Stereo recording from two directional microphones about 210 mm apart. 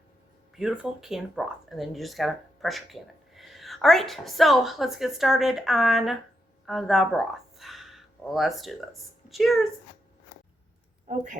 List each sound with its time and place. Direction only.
0.6 s speech: 5° right (ahead or behind)
11.1 s a woman's voice: 35° right (ahead or behind)